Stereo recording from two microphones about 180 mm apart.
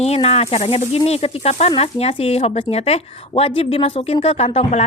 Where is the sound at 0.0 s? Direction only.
35° left (ahead or behind).